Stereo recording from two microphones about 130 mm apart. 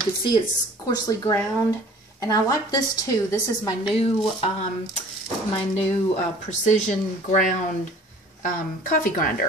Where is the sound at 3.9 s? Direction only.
55° left (ahead or behind).